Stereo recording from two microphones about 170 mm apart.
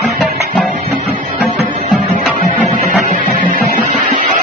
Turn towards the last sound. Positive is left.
turn(degrees=-50)  # may be behind; listen again after turning